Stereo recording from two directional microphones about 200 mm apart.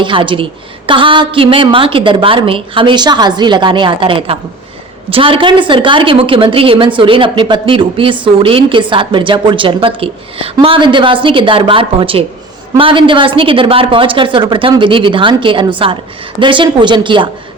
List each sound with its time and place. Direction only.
0.0 s a woman's voice: 25° right (ahead or behind)